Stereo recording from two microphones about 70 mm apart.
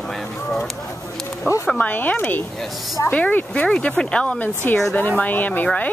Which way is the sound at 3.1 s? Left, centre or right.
Centre.